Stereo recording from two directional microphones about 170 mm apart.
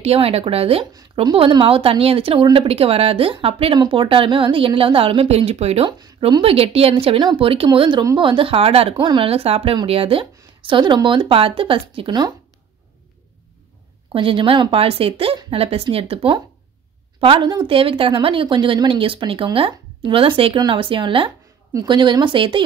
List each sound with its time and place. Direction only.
0.0 s speech: 35° right (ahead or behind)
14.1 s speech: 30° right (ahead or behind)